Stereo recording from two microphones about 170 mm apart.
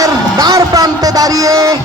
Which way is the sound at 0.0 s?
20° right (ahead or behind).